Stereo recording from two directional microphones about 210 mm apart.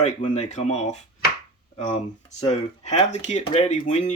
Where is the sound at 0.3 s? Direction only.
35° left (ahead or behind).